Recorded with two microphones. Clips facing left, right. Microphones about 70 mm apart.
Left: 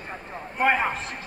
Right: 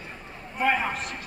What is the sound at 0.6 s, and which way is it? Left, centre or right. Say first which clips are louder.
Speech: left 2 dB; left.